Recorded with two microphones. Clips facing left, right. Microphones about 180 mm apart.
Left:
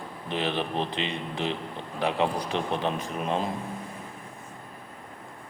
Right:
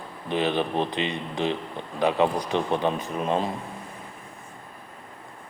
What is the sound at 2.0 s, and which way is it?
Speech, centre (ahead or behind).